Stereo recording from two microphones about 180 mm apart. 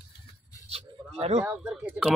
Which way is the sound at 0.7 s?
35° right (ahead or behind).